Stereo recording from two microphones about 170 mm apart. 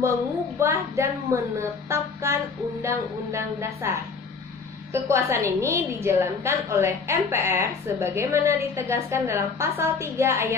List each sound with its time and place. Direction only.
0.6 s a woman's voice: 15° right (ahead or behind)
4.9 s a woman's voice: 15° right (ahead or behind)